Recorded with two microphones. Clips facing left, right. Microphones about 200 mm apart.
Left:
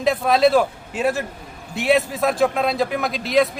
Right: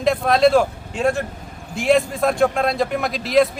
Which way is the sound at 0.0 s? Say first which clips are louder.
Right 1 dB; centre (ahead or behind).